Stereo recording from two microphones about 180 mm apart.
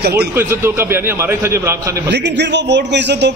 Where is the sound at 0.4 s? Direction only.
15° right (ahead or behind).